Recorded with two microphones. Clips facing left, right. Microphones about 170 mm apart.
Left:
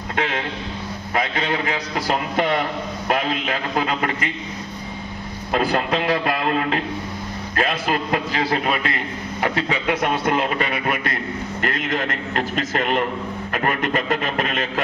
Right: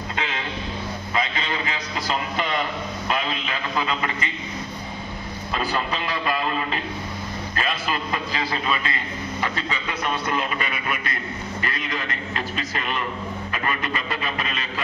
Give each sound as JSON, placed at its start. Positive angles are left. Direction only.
{"t": 0.1, "sound": "a sound", "side_deg": 55}
{"t": 1.1, "sound": "a man's voice", "side_deg": 55}
{"t": 5.5, "sound": "a man's voice", "side_deg": 60}
{"t": 13.5, "sound": "music", "side_deg": 55}